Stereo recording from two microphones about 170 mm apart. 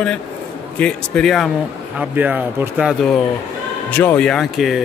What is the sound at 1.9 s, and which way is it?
Speech, 10° right (ahead or behind).